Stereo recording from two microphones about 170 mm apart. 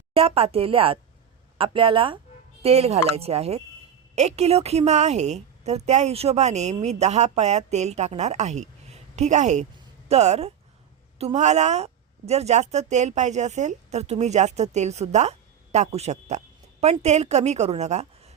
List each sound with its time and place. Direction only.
0.1 s a woman's voice: 35° right (ahead or behind)